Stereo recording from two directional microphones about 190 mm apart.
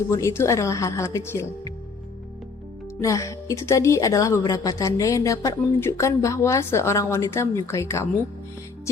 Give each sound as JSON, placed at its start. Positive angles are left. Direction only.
{"t": 0.1, "sound": "a woman's voice", "side_deg": 15}
{"t": 3.0, "sound": "a woman's voice", "side_deg": 15}